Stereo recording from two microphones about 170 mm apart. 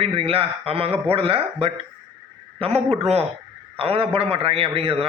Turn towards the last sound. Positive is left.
turn(degrees=-35)  # may be behind; listen again after turning